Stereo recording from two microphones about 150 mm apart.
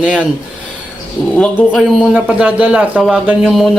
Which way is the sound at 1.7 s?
5° right (ahead or behind).